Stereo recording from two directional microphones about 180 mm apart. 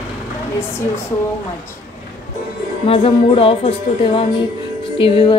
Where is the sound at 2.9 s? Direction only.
30° left (ahead or behind).